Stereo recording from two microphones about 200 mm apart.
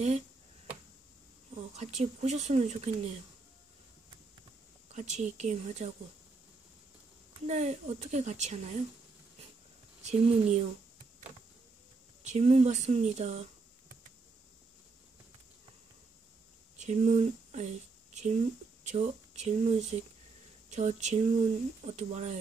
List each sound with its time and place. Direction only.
1.5 s speech: 35° right (ahead or behind)
4.9 s speech: 35° right (ahead or behind)
7.4 s speech: 35° right (ahead or behind)
12.2 s speech: 35° right (ahead or behind)
16.7 s speech: 35° right (ahead or behind)